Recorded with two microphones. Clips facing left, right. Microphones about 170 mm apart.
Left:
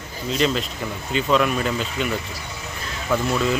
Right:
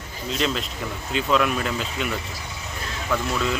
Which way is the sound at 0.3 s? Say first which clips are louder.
Left 4 dB; centre (ahead or behind).